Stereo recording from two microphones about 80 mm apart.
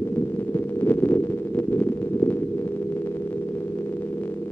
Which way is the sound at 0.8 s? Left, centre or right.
Left.